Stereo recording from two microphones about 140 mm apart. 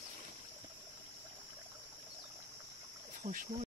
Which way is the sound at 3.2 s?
70° right (ahead or behind).